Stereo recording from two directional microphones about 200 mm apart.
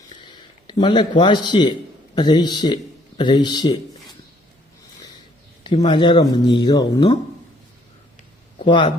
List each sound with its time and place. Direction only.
0.1 s a sound: 20° left (ahead or behind)
2.1 s speech: 20° left (ahead or behind)
5.6 s speech: 30° left (ahead or behind)
8.6 s speech: 25° left (ahead or behind)